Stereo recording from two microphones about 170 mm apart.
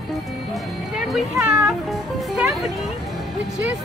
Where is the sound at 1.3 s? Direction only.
5° right (ahead or behind).